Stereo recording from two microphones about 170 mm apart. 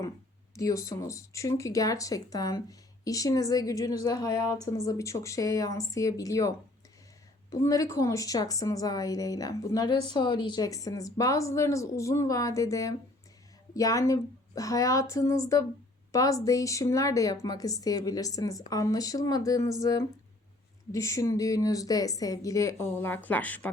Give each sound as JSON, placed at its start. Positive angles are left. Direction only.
{"t": 0.5, "sound": "a woman's voice", "side_deg": 20}
{"t": 7.5, "sound": "a woman's voice", "side_deg": 20}